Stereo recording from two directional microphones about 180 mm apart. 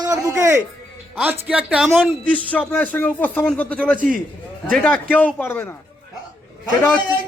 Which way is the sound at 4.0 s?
50° right (ahead or behind).